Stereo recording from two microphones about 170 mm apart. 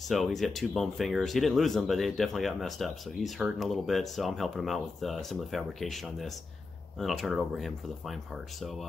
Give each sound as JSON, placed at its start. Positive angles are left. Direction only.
{"t": 0.1, "sound": "speech", "side_deg": 0}